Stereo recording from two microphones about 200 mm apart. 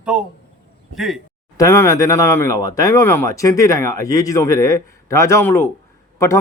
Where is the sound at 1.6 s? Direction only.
15° left (ahead or behind).